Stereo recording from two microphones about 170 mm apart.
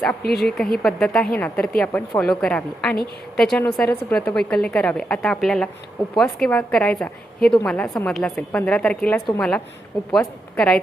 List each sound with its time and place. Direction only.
0.2 s speech: 65° left (ahead or behind)
0.4 s a woman's voice: centre (ahead or behind)